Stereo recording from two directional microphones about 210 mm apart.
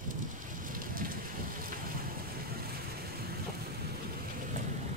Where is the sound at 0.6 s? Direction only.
40° right (ahead or behind).